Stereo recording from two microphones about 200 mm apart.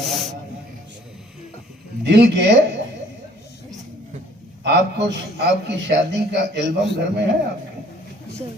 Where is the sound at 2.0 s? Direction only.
60° right (ahead or behind).